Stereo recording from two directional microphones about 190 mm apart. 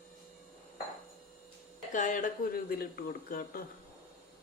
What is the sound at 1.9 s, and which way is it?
Speech, 45° left (ahead or behind).